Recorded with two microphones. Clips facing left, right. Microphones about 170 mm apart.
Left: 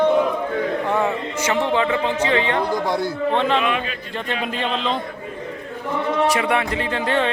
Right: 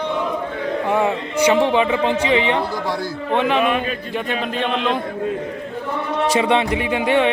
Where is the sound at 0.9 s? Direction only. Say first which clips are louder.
Right 2 dB; 15° right (ahead or behind).